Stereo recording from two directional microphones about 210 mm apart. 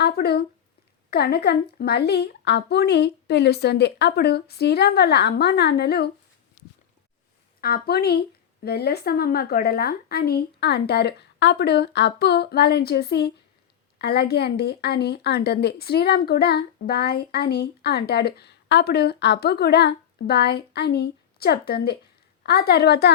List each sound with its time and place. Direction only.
0.0 s speech: 50° left (ahead or behind)
7.6 s speech: 45° left (ahead or behind)